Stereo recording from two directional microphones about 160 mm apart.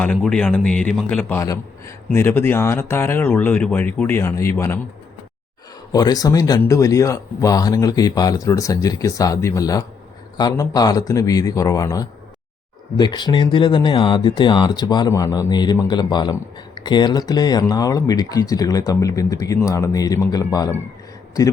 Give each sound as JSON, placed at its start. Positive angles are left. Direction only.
{"t": 0.2, "sound": "speech", "side_deg": 5}
{"t": 5.9, "sound": "speech", "side_deg": 25}